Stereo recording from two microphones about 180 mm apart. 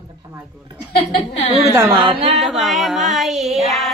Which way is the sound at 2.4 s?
Centre (ahead or behind).